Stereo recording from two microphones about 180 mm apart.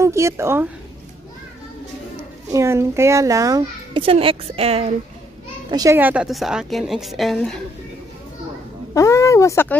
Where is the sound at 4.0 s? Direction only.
30° right (ahead or behind).